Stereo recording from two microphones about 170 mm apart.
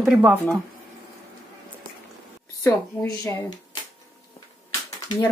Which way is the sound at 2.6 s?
20° left (ahead or behind).